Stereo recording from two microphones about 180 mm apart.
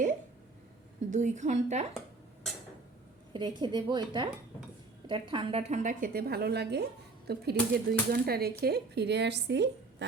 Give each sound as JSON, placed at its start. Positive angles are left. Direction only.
{"t": 1.1, "sound": "speech", "side_deg": -40}
{"t": 3.3, "sound": "a woman's voice", "side_deg": -25}